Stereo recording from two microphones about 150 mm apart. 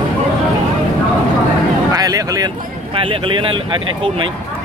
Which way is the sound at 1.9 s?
25° right (ahead or behind).